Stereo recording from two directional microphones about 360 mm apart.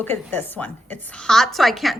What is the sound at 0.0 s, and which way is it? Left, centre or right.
A woman's voice, centre.